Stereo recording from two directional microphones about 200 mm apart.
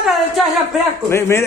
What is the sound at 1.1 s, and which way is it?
Speech, 15° left (ahead or behind).